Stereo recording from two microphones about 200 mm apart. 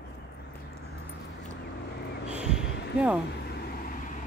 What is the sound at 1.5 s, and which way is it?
Vehicle, 55° left (ahead or behind).